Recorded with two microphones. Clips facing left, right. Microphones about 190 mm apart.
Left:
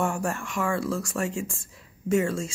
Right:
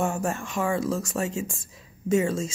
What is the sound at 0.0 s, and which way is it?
Speech, 20° right (ahead or behind).